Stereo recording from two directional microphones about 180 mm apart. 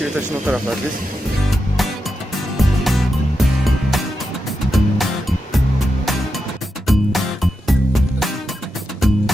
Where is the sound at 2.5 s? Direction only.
Centre (ahead or behind).